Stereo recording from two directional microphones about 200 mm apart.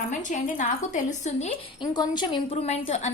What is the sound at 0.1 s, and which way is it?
A woman's voice, 40° left (ahead or behind).